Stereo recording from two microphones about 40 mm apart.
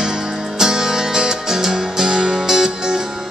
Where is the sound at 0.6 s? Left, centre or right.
Centre.